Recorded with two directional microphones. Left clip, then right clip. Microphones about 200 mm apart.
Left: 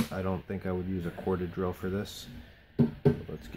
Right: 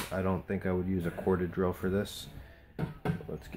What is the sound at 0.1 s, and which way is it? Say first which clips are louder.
Speech: right 2 dB; 10° left (ahead or behind).